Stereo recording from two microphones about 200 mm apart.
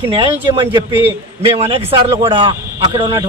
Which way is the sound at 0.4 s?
25° right (ahead or behind).